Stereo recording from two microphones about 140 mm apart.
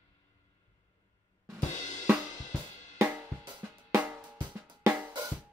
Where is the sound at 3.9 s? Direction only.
10° right (ahead or behind).